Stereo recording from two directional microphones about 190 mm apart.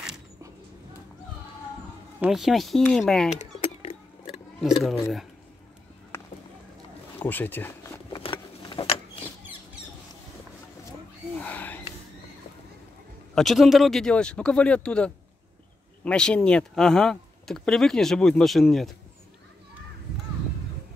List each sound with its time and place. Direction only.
2.1 s speech: centre (ahead or behind)
4.6 s speech: centre (ahead or behind)
6.1 s a sound: 10° left (ahead or behind)
7.2 s speech: 10° left (ahead or behind)
8.1 s vehicle: 25° left (ahead or behind)
9.2 s mouse: 10° right (ahead or behind)
11.3 s a sound: 10° left (ahead or behind)
13.3 s speech: centre (ahead or behind)